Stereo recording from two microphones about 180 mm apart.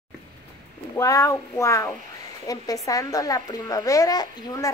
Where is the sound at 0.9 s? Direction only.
20° left (ahead or behind).